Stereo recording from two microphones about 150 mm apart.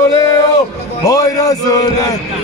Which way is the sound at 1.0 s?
25° left (ahead or behind).